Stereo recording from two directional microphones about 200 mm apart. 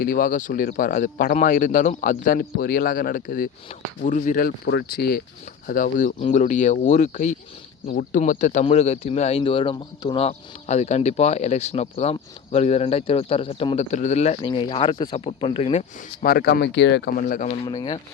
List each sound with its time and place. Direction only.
0.0 s speech: 45° left (ahead or behind); by 15.8 s 25° left (ahead or behind)
16.2 s speech: 50° left (ahead or behind)
17.7 s speech: 20° left (ahead or behind)